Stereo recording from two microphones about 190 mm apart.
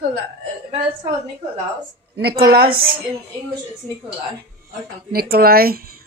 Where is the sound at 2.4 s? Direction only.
55° right (ahead or behind).